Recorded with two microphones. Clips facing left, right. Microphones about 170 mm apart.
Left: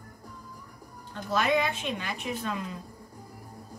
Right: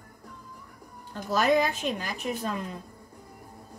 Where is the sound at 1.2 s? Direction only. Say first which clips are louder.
Right 3 dB; 40° right (ahead or behind).